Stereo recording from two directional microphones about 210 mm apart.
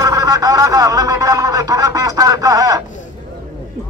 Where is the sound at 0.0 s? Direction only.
15° right (ahead or behind).